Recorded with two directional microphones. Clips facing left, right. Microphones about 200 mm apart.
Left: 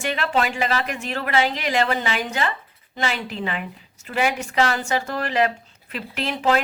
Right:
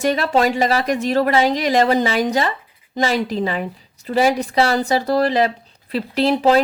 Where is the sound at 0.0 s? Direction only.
40° right (ahead or behind).